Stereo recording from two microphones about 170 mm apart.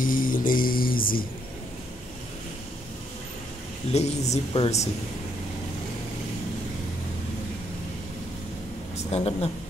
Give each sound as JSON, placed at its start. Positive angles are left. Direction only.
{"t": 0.0, "sound": "mantra", "side_deg": 55}
{"t": 3.9, "sound": "speech", "side_deg": 40}
{"t": 8.9, "sound": "a woman's voice", "side_deg": 35}